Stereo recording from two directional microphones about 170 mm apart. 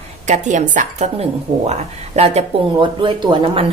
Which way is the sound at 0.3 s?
45° right (ahead or behind).